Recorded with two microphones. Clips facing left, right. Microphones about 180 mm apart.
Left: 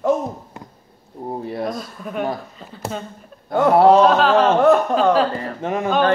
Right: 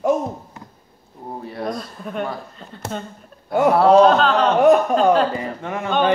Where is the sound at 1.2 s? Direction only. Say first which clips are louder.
Left 5 dB; 25° left (ahead or behind).